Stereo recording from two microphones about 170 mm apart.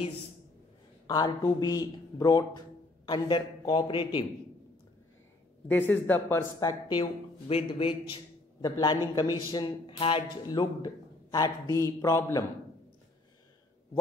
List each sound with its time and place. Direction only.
1.0 s a man's voice: 20° left (ahead or behind)
5.7 s a man's voice: 10° left (ahead or behind)